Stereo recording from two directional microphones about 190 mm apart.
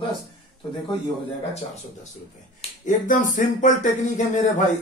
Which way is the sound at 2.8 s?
45° left (ahead or behind).